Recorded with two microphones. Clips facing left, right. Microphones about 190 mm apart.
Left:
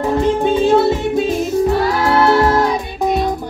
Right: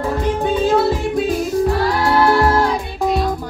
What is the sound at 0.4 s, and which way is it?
Music, 25° left (ahead or behind).